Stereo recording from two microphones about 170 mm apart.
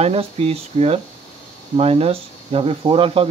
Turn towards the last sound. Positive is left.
turn(degrees=-35)  # may be behind; listen again after turning